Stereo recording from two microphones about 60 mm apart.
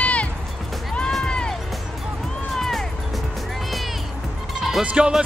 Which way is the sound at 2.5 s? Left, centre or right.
Centre.